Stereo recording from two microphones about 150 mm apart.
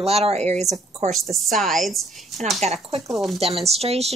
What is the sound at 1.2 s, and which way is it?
Speech, centre (ahead or behind).